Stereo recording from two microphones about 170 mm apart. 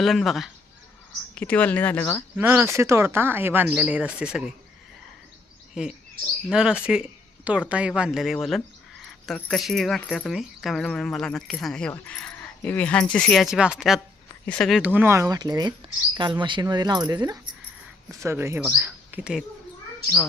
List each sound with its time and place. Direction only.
0.0 s speech: centre (ahead or behind)
2.3 s speech: 10° right (ahead or behind)
5.8 s speech: 5° right (ahead or behind)
14.8 s speech: 10° right (ahead or behind)